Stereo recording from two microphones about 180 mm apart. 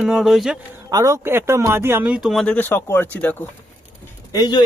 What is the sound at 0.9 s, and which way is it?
Speech, 20° right (ahead or behind).